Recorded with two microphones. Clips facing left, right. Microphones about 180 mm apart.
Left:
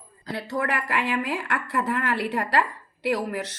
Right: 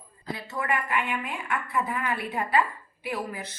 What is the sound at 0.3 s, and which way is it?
A woman's voice, 70° left (ahead or behind).